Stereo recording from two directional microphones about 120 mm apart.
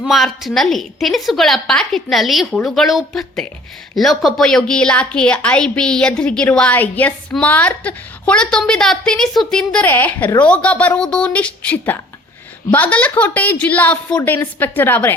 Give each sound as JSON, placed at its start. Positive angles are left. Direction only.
{"t": 0.0, "sound": "a woman's voice", "side_deg": 0}